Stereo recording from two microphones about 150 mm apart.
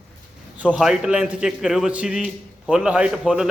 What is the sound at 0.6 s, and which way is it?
A man's voice, 5° right (ahead or behind).